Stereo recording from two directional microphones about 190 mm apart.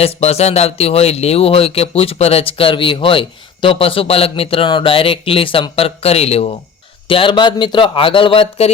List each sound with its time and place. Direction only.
0.0 s speech: 35° left (ahead or behind)